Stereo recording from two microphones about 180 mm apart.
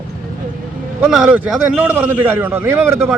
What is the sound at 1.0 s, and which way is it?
A man's voice, 5° right (ahead or behind).